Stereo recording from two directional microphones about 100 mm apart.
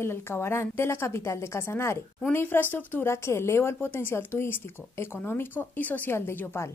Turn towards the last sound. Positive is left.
turn(degrees=25)  # may be behind; listen again after turning